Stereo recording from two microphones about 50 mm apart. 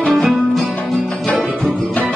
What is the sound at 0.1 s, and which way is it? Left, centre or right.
Music, centre.